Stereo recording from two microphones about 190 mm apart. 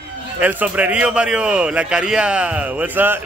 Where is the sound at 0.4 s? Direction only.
10° right (ahead or behind).